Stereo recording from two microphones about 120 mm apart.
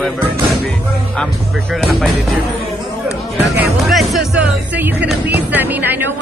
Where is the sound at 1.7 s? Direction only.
Centre (ahead or behind).